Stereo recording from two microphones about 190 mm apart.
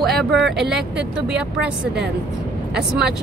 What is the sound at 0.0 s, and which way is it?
Speech, centre (ahead or behind).